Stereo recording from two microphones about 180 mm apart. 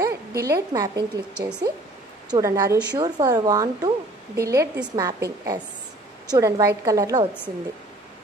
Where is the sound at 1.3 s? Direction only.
5° right (ahead or behind).